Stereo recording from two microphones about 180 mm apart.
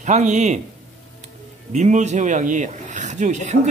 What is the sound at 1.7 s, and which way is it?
Speech, 40° right (ahead or behind).